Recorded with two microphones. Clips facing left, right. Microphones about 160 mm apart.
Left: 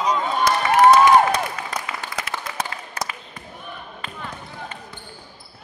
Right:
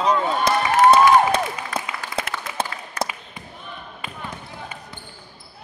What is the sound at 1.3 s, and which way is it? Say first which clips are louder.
Applause: right 1 dB; 30° right (ahead or behind).